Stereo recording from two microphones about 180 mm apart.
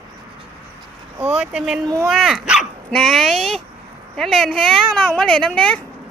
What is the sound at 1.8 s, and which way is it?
Speech, 15° right (ahead or behind).